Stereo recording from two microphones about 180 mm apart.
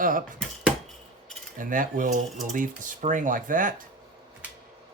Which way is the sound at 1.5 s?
50° right (ahead or behind).